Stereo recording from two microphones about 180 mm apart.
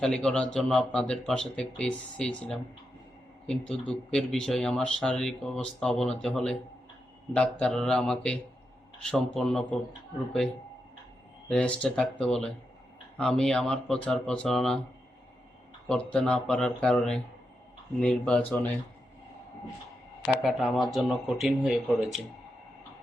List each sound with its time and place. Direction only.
0.0 s speech: 5° left (ahead or behind)
11.4 s speech: 5° left (ahead or behind)
15.9 s speech: 5° left (ahead or behind)
20.2 s speech: centre (ahead or behind)